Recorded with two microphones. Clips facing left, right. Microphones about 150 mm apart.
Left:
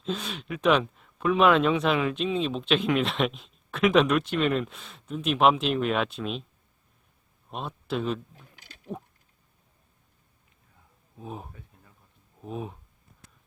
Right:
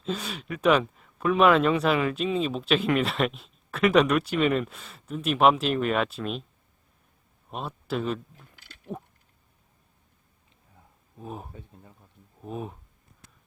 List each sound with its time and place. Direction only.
0.0 s speech: centre (ahead or behind)
7.5 s speech: centre (ahead or behind)
8.9 s a sound: centre (ahead or behind)
11.2 s speech: centre (ahead or behind)